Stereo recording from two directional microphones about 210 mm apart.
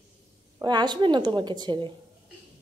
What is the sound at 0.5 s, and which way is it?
Speech, 20° right (ahead or behind).